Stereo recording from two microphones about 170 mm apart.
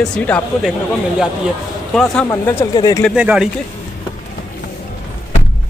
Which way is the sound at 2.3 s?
15° left (ahead or behind).